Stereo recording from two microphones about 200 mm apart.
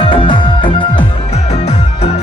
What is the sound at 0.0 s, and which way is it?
Music, 25° left (ahead or behind).